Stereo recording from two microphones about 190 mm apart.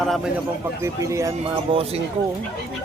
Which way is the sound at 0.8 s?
15° right (ahead or behind).